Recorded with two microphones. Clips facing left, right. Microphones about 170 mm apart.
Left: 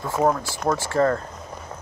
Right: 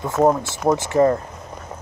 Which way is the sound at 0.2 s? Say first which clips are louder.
Right 5 dB; 20° right (ahead or behind).